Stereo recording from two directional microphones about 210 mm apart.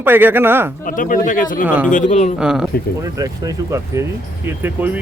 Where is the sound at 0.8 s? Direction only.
40° left (ahead or behind).